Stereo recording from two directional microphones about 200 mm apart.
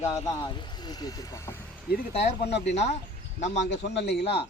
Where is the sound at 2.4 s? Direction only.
60° left (ahead or behind).